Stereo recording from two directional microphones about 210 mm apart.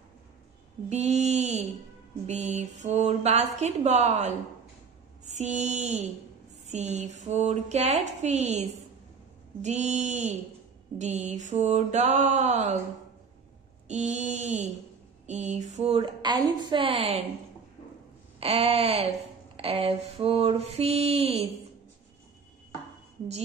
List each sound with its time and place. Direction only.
0.8 s a sound: 30° right (ahead or behind)
2.2 s speech: 30° right (ahead or behind)
13.8 s speech: 35° right (ahead or behind)
18.4 s speech: 30° right (ahead or behind)